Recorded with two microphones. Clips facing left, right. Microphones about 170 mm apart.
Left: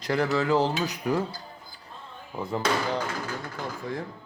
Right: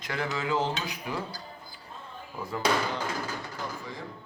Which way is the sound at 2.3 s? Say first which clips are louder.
Left 5 dB; 25° left (ahead or behind).